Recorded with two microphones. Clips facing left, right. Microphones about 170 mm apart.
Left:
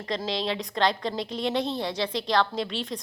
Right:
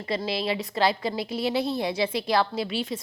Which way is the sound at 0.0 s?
5° right (ahead or behind).